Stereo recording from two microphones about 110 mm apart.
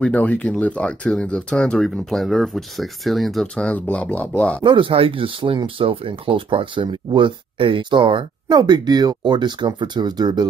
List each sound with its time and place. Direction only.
0.0 s speech: 10° left (ahead or behind)
4.6 s speech: 50° right (ahead or behind)